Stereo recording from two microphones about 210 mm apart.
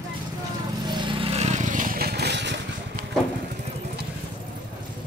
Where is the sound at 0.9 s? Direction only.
20° right (ahead or behind); by 2.5 s 55° right (ahead or behind).